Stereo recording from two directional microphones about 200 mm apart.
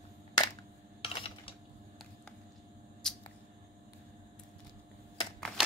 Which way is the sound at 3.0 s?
5° left (ahead or behind).